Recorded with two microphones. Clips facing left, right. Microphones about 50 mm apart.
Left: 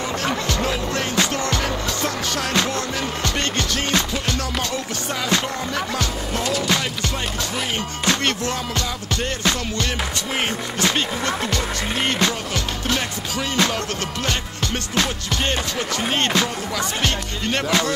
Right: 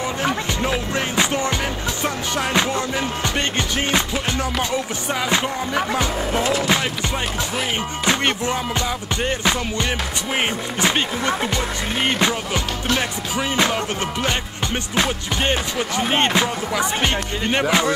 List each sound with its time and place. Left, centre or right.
0.2 s skateboard: centre
5.3 s speech: centre
8.0 s music: centre